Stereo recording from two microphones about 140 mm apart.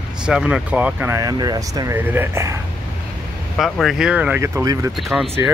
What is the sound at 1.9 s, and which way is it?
Speech, 15° right (ahead or behind).